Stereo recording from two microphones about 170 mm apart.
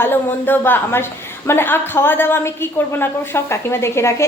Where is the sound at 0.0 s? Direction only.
10° left (ahead or behind).